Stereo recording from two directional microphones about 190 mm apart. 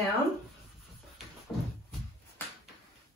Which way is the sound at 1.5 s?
Centre (ahead or behind).